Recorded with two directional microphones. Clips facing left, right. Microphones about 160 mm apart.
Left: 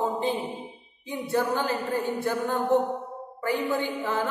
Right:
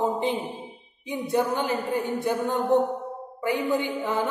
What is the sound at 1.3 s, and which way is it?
A woman's voice, 20° right (ahead or behind).